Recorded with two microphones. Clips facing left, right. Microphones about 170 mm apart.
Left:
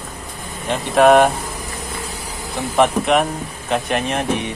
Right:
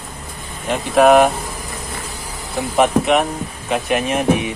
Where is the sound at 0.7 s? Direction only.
Centre (ahead or behind).